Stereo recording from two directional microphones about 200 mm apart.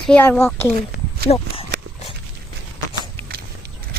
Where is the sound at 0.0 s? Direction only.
5° left (ahead or behind).